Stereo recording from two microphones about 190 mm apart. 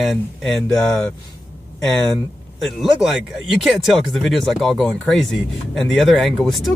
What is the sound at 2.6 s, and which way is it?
Speech, centre (ahead or behind).